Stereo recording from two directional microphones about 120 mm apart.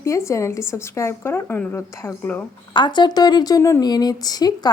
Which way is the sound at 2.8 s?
40° left (ahead or behind).